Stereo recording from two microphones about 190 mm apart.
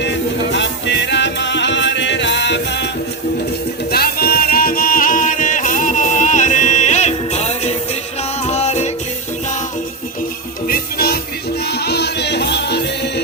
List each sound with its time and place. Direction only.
0.5 s music: 70° left (ahead or behind)
3.9 s music: 50° left (ahead or behind); by 8.9 s 35° left (ahead or behind)
10.7 s music: 55° left (ahead or behind)